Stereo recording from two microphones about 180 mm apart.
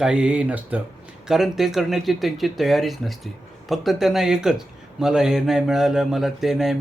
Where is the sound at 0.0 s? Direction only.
5° right (ahead or behind).